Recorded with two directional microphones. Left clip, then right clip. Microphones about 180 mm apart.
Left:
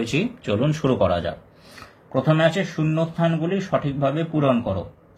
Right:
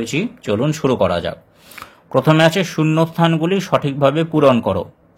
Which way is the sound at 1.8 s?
45° right (ahead or behind).